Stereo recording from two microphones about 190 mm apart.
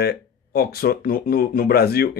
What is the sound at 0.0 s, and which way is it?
Speech, 55° left (ahead or behind).